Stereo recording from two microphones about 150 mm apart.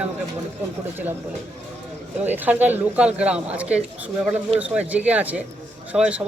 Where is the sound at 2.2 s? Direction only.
10° right (ahead or behind).